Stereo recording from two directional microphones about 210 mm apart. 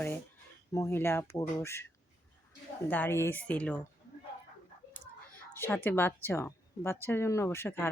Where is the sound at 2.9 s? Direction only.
10° left (ahead or behind).